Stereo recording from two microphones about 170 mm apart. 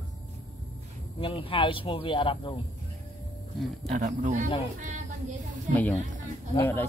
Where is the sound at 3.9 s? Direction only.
45° right (ahead or behind).